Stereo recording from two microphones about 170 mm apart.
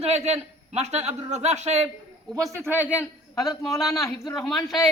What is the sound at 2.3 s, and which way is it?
Speech, 15° right (ahead or behind).